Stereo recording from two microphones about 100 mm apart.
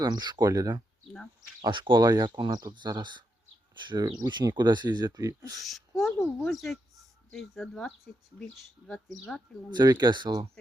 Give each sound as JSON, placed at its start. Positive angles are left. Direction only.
{"t": 0.0, "sound": "speech", "side_deg": -45}
{"t": 1.6, "sound": "speech", "side_deg": -50}
{"t": 5.6, "sound": "a sound", "side_deg": 0}
{"t": 6.4, "sound": "speech", "side_deg": 0}
{"t": 9.7, "sound": "speech", "side_deg": -45}